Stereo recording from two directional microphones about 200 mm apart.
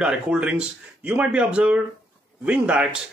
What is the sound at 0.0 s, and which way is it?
A man's voice, 5° right (ahead or behind).